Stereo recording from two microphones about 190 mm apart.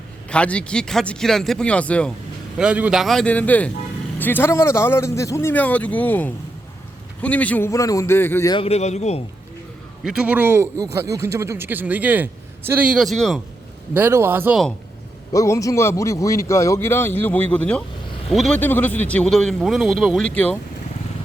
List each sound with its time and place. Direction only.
0.3 s a man's voice: 5° left (ahead or behind)
2.6 s a man's voice: 5° right (ahead or behind); by 8.5 s 15° left (ahead or behind)
8.5 s a man's voice: 30° left (ahead or behind)
10.0 s a man's voice: 5° right (ahead or behind)
13.9 s a man's voice: 10° right (ahead or behind)
15.3 s a man's voice: 15° left (ahead or behind)